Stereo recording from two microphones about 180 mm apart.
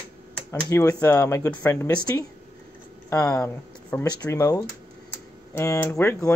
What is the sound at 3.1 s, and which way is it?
Speech, 20° left (ahead or behind).